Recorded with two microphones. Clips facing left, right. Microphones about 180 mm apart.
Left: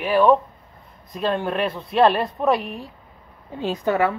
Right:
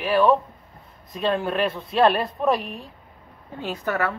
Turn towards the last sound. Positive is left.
turn(degrees=15)  # may be behind; listen again after turning